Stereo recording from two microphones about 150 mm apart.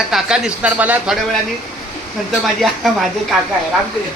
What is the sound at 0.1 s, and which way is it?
Speech, 5° right (ahead or behind).